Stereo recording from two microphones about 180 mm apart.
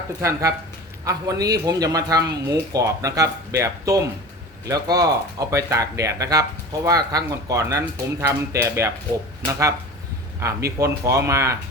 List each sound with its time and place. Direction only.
0.2 s speech: 15° right (ahead or behind)